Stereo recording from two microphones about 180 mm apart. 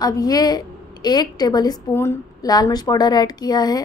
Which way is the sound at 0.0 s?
20° left (ahead or behind).